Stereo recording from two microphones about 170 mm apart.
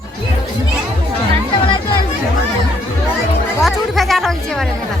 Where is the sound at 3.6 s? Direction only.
Centre (ahead or behind).